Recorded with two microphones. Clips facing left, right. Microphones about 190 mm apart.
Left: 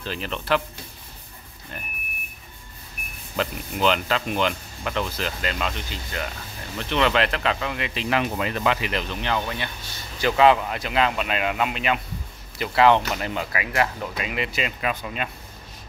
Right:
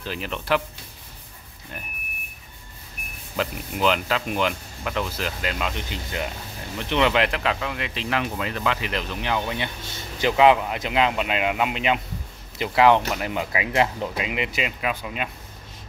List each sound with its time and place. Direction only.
0.0 s speech: 10° right (ahead or behind)
3.3 s speech: 5° right (ahead or behind)
5.9 s speech: 20° right (ahead or behind); by 8.2 s 10° left (ahead or behind)
8.2 s speech: 20° left (ahead or behind)
8.9 s speech: 5° right (ahead or behind)